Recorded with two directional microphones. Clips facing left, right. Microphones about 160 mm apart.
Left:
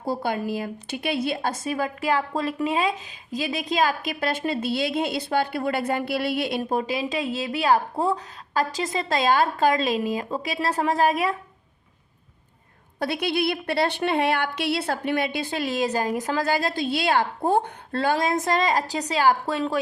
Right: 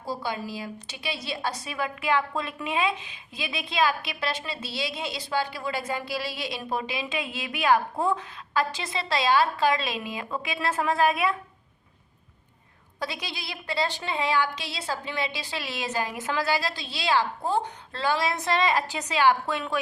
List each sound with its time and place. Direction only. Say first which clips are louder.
0.0 s a woman's voice: left 5 dB; 55° left (ahead or behind); by 11.3 s 40° left (ahead or behind)
13.0 s a woman's voice: left 10 dB; 60° left (ahead or behind); by 19.8 s 35° left (ahead or behind)